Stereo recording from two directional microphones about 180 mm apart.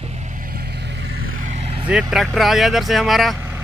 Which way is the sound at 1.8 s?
5° right (ahead or behind).